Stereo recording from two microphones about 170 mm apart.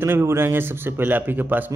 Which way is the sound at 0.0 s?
15° right (ahead or behind).